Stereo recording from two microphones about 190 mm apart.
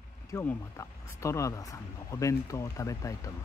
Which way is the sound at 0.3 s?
15° left (ahead or behind).